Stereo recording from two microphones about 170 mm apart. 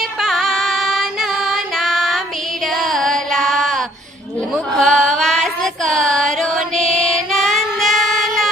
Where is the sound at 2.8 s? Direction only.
Centre (ahead or behind).